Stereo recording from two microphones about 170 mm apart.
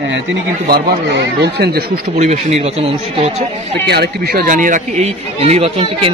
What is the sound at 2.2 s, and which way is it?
Speech, 40° right (ahead or behind).